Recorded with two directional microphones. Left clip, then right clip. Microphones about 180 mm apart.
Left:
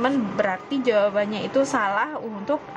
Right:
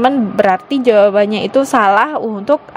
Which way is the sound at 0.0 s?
40° right (ahead or behind).